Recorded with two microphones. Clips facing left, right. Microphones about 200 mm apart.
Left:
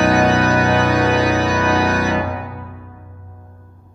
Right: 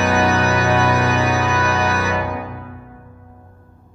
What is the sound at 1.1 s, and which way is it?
Music, 35° left (ahead or behind).